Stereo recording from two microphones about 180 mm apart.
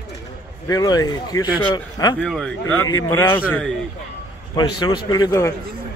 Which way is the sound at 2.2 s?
5° left (ahead or behind).